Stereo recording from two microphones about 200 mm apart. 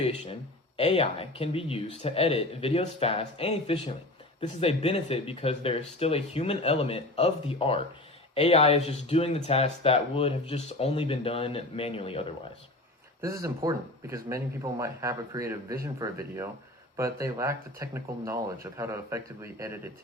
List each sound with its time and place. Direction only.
0.0 s speech: 30° left (ahead or behind)
13.2 s speech: 15° right (ahead or behind)